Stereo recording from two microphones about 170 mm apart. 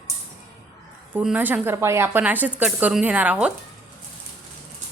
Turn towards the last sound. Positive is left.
turn(degrees=-10)  # may be behind; listen again after turning